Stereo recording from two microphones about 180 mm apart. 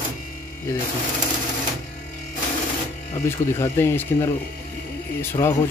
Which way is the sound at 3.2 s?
15° left (ahead or behind).